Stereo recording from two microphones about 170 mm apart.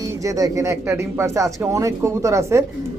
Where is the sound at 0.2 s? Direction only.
20° right (ahead or behind).